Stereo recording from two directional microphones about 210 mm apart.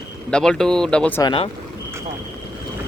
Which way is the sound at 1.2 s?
25° left (ahead or behind).